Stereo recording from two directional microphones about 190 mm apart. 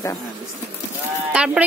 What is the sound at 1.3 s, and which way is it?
Speech, 5° right (ahead or behind).